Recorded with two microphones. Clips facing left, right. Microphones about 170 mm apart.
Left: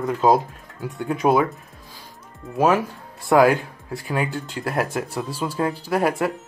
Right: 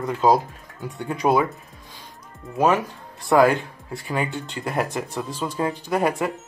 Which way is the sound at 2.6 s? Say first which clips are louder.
Left 1 dB; 5° left (ahead or behind).